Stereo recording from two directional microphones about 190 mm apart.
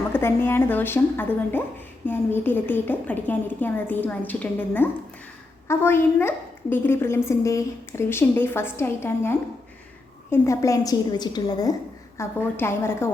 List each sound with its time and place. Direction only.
0.1 s a woman's voice: 10° left (ahead or behind)
10.3 s a woman's voice: 15° left (ahead or behind)